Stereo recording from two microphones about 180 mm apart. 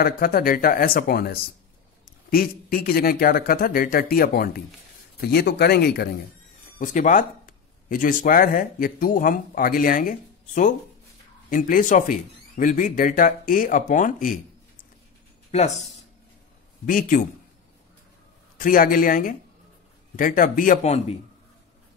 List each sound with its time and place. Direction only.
0.0 s speech: 55° left (ahead or behind)
6.8 s speech: 45° left (ahead or behind)
15.5 s speech: 35° left (ahead or behind)
16.8 s speech: 50° left (ahead or behind)
18.6 s speech: 50° left (ahead or behind)